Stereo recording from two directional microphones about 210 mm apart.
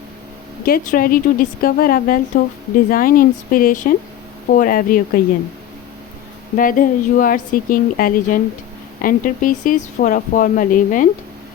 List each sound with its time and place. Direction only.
0.6 s a woman's voice: 45° left (ahead or behind)
6.6 s speech: 40° left (ahead or behind)